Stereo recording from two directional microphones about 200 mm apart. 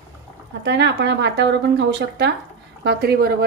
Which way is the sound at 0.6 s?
60° right (ahead or behind).